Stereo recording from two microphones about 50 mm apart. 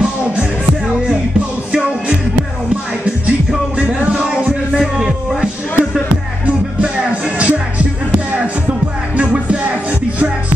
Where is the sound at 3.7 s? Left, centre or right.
Right.